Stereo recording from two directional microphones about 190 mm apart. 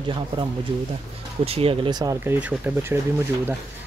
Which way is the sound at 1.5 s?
30° right (ahead or behind).